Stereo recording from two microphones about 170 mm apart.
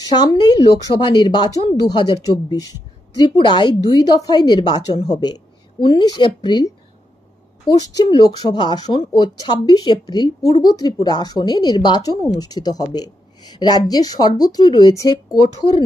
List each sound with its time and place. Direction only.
0.1 s a woman's voice: 25° left (ahead or behind)